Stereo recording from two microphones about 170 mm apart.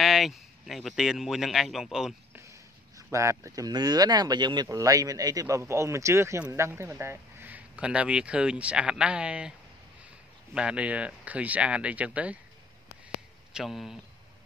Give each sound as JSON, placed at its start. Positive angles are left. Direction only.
{"t": 0.0, "sound": "speech", "side_deg": 0}
{"t": 3.0, "sound": "speech", "side_deg": -15}
{"t": 10.5, "sound": "speech", "side_deg": -5}
{"t": 13.5, "sound": "speech", "side_deg": 0}